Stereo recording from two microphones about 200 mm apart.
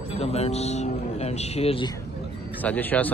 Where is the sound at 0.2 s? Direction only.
30° left (ahead or behind).